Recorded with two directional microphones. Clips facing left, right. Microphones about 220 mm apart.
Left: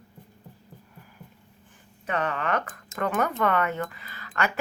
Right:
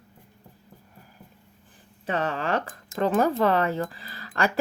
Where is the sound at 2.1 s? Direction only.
30° right (ahead or behind).